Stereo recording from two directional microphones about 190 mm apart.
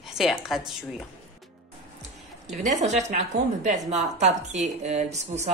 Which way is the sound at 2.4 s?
35° right (ahead or behind).